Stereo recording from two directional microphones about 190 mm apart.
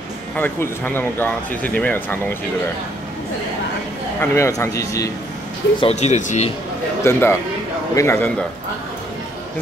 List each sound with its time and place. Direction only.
0.4 s speech: 10° left (ahead or behind)
4.2 s speech: 15° left (ahead or behind)
5.8 s speech: 35° left (ahead or behind)
7.0 s speech: 15° left (ahead or behind)